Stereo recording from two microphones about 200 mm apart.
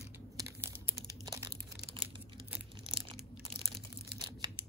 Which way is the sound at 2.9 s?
25° right (ahead or behind).